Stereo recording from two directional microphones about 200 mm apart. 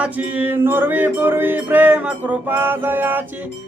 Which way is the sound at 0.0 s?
10° right (ahead or behind).